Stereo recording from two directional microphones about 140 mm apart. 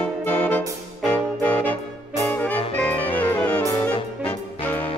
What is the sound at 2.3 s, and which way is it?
Music, 10° left (ahead or behind).